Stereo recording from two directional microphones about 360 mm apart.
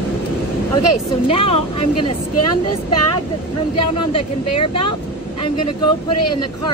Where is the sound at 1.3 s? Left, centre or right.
Centre.